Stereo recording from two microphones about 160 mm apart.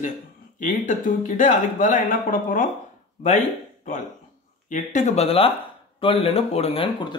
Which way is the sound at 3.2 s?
50° left (ahead or behind).